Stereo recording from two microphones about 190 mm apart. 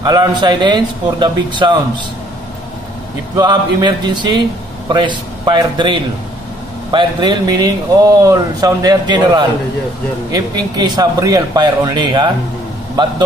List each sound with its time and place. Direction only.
0.0 s speech: 20° right (ahead or behind)
3.3 s a man's voice: 25° right (ahead or behind)